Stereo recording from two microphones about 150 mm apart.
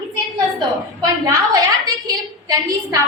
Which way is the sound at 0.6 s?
25° right (ahead or behind).